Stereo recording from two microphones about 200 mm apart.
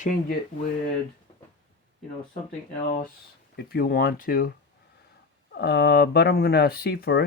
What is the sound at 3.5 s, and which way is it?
Speech, 50° left (ahead or behind).